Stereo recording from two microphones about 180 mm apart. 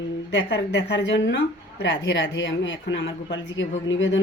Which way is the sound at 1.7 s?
90° left.